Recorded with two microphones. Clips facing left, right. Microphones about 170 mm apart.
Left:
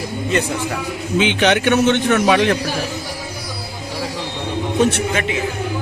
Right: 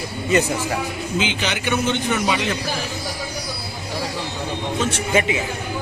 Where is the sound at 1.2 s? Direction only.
65° left (ahead or behind).